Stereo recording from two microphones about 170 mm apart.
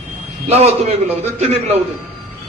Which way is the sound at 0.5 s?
35° right (ahead or behind).